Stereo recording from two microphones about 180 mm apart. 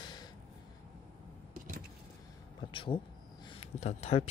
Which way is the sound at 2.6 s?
25° left (ahead or behind).